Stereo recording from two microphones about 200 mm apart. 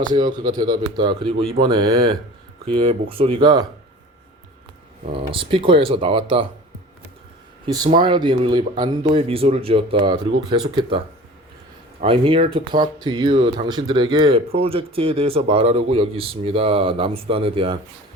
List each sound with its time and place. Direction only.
0.1 s speech: 20° right (ahead or behind)
2.8 s speech: 30° right (ahead or behind)
5.0 s speech: 25° right (ahead or behind)
7.9 s speech: 25° right (ahead or behind)